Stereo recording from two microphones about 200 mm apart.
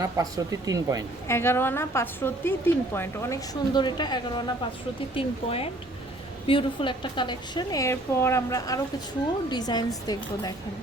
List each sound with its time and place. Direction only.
0.0 s speech: 15° right (ahead or behind)
1.3 s a woman's voice: 10° left (ahead or behind)